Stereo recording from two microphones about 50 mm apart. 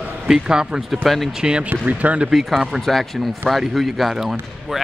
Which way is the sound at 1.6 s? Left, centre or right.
Right.